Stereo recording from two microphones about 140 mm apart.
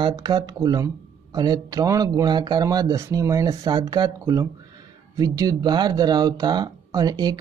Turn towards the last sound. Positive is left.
turn(degrees=-30)  # may be behind; listen again after turning